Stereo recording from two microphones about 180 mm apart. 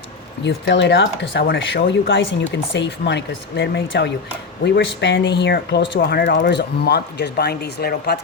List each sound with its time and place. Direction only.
0.4 s speech: 75° left (ahead or behind)
4.9 s speech: 85° left; by 8.2 s 60° left (ahead or behind)